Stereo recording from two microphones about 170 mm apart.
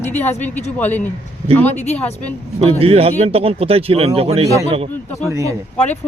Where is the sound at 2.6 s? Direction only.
35° right (ahead or behind).